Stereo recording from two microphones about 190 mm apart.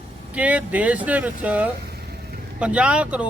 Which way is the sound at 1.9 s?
55° right (ahead or behind).